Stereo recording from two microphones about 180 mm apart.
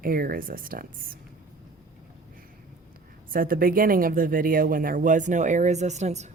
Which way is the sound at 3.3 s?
50° right (ahead or behind).